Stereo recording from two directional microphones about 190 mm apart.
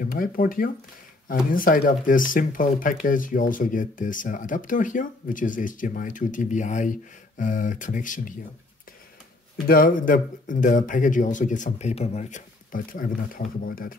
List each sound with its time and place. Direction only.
0.0 s speech: 50° left (ahead or behind)
9.7 s speech: 45° left (ahead or behind)